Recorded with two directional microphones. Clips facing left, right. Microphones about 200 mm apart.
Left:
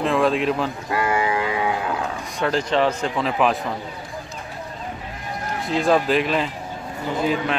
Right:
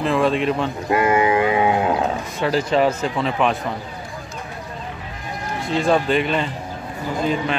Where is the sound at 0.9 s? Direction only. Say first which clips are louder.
Right 5 dB; 20° right (ahead or behind).